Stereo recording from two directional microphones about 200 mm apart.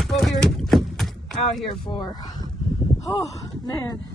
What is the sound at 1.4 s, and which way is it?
Speech, 30° left (ahead or behind).